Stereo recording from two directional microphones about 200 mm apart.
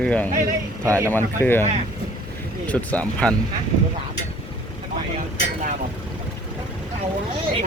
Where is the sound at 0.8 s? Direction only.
15° right (ahead or behind).